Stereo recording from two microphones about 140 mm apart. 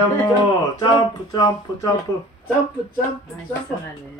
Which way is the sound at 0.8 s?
30° left (ahead or behind).